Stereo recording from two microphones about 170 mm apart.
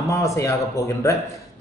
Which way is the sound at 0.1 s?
15° left (ahead or behind).